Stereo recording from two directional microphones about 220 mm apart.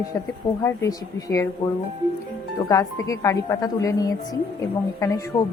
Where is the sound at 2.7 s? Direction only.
15° left (ahead or behind).